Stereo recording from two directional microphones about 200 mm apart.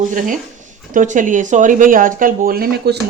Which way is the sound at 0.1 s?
40° right (ahead or behind).